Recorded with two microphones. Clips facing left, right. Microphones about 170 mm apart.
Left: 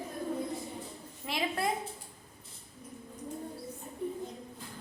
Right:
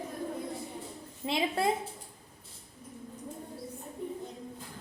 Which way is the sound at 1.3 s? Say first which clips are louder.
Right 4 dB; 25° right (ahead or behind).